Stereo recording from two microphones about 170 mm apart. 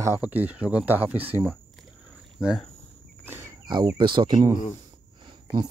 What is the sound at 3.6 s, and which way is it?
Speech, 25° right (ahead or behind).